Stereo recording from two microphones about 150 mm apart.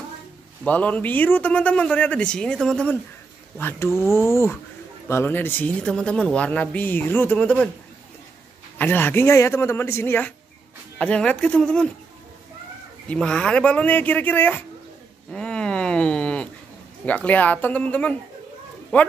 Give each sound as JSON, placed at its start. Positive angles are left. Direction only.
{"t": 0.7, "sound": "speech", "side_deg": 10}
{"t": 8.7, "sound": "speech", "side_deg": 15}
{"t": 13.1, "sound": "speech", "side_deg": 5}
{"t": 15.3, "sound": "a sound", "side_deg": 5}
{"t": 17.0, "sound": "speech", "side_deg": 10}